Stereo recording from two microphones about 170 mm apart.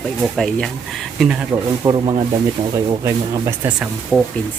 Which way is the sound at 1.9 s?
25° right (ahead or behind).